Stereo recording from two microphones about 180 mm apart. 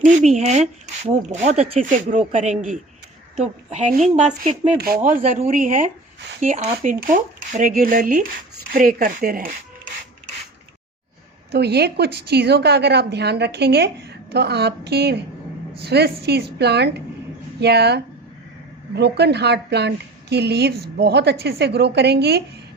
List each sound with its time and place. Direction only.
0.0 s speech: 40° right (ahead or behind)
4.8 s a woman's voice: 55° right (ahead or behind)
5.2 s speech: 45° right (ahead or behind)
11.5 s a woman's voice: 65° right (ahead or behind)